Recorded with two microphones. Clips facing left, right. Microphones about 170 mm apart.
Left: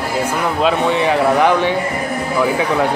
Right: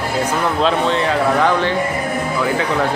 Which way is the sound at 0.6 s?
15° left (ahead or behind).